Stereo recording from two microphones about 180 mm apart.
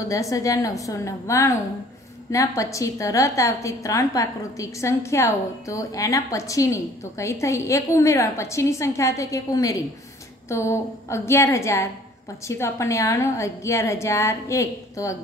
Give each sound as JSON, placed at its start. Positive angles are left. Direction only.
{"t": 0.0, "sound": "a woman's voice", "side_deg": 20}